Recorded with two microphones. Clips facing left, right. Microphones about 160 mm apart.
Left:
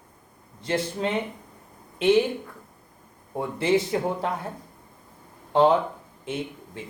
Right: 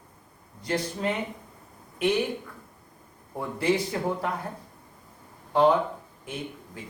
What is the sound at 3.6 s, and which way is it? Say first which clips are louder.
Speech: left 3 dB; 25° left (ahead or behind).